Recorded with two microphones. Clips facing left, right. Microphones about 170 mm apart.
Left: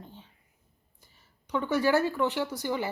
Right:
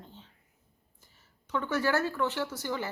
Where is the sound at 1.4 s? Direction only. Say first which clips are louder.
Left 3 dB; 15° left (ahead or behind).